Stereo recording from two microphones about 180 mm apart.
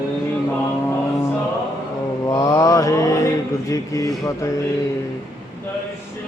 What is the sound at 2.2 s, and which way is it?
Mantra, 20° left (ahead or behind).